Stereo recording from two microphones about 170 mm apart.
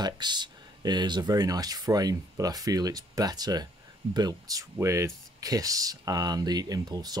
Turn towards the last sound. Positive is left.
turn(degrees=-25)  # may be behind; listen again after turning